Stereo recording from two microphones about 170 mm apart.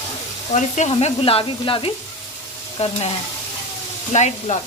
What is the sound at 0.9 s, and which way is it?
Speech, 35° left (ahead or behind).